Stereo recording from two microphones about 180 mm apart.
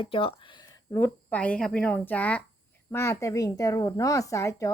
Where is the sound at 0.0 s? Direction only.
30° left (ahead or behind).